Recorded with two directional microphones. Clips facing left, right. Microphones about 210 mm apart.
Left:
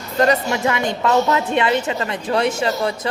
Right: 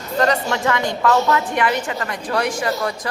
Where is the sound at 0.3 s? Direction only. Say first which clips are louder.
Left 1 dB; 15° left (ahead or behind).